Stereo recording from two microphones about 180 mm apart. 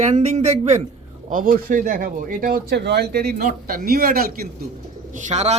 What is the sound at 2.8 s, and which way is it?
Speech, 65° right (ahead or behind).